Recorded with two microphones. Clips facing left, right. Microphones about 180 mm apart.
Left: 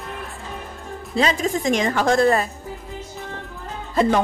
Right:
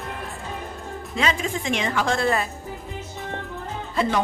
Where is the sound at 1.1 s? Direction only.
40° left (ahead or behind).